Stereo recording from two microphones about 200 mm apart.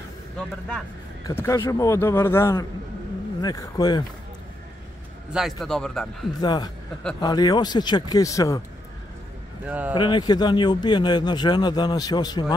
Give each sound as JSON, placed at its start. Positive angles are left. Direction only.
{"t": 0.4, "sound": "a man's voice", "side_deg": 5}
{"t": 5.3, "sound": "a man's voice", "side_deg": 0}
{"t": 6.4, "sound": "a man's voice", "side_deg": 20}
{"t": 9.7, "sound": "speech", "side_deg": -10}
{"t": 9.9, "sound": "a man's voice", "side_deg": 20}